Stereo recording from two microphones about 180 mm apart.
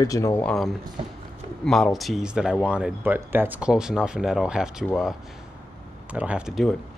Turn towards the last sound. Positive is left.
turn(degrees=0)  # may be behind; listen again after turning